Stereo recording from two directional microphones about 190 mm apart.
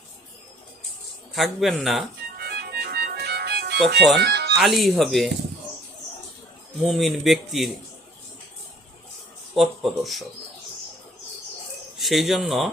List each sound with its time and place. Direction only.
1.3 s a man's voice: centre (ahead or behind)
2.4 s music: 60° right (ahead or behind)
4.5 s a man's voice: centre (ahead or behind)
6.8 s a man's voice: centre (ahead or behind)
9.6 s a man's voice: centre (ahead or behind)
11.9 s speech: centre (ahead or behind)